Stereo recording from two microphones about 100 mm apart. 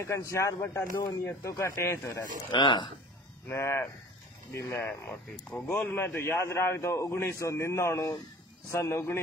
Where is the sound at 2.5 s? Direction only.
55° left (ahead or behind).